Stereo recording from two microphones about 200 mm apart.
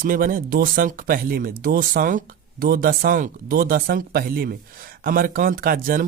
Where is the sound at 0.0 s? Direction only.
40° right (ahead or behind).